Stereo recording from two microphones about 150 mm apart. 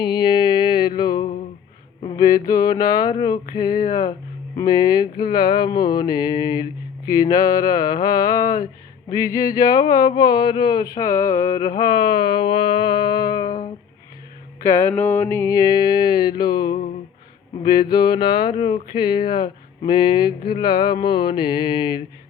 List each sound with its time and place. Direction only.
0.0 s music: 30° left (ahead or behind)
2.1 s speech: 25° left (ahead or behind)
14.6 s speech: 20° left (ahead or behind)